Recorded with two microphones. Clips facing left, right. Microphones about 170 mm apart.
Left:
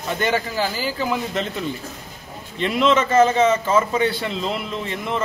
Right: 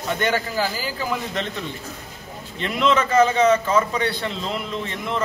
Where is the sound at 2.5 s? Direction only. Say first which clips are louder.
Left 2 dB; centre (ahead or behind).